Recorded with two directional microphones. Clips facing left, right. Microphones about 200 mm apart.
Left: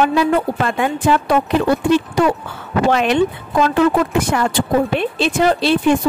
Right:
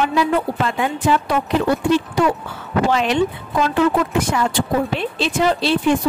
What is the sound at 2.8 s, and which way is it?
Speech, 55° left (ahead or behind).